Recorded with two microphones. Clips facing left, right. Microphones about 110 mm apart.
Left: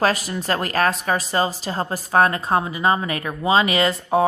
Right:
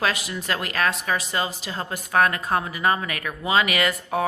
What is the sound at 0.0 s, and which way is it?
A woman's voice, 40° left (ahead or behind).